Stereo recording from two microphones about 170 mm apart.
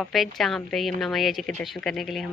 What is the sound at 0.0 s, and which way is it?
A woman's voice, centre (ahead or behind).